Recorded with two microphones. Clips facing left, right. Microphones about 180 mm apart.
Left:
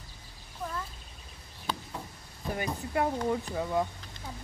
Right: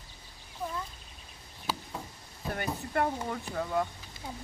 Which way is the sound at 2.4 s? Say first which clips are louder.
Left 1 dB; 15° left (ahead or behind).